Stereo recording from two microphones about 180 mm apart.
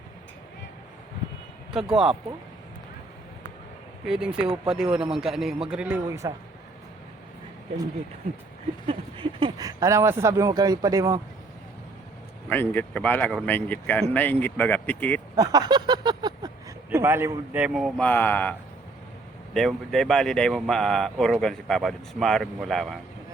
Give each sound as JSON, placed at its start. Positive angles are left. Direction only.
{"t": 1.7, "sound": "speech", "side_deg": -5}
{"t": 4.0, "sound": "speech", "side_deg": -5}
{"t": 8.9, "sound": "speech", "side_deg": -25}
{"t": 12.5, "sound": "speech", "side_deg": 10}
{"t": 15.4, "sound": "speech", "side_deg": -20}
{"t": 19.5, "sound": "speech", "side_deg": 0}